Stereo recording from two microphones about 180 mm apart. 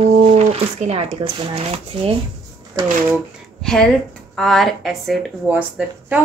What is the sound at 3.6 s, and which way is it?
A woman's voice, 5° left (ahead or behind).